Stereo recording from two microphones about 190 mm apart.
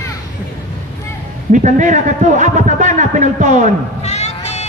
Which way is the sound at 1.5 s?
40° right (ahead or behind).